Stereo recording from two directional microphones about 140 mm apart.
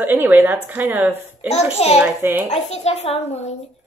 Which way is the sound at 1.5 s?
50° left (ahead or behind).